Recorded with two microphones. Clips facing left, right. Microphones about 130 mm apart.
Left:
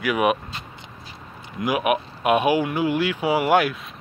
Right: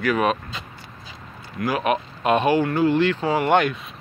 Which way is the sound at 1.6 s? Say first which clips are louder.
Left 1 dB; 15° left (ahead or behind).